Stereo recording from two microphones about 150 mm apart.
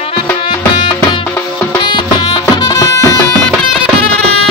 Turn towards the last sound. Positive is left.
turn(degrees=20)  # may be behind; listen again after turning